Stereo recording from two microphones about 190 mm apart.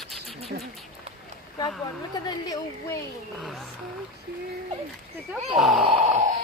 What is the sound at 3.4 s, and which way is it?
Speech, centre (ahead or behind).